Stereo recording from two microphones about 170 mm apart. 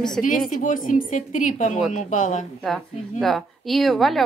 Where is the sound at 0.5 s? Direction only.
50° left (ahead or behind).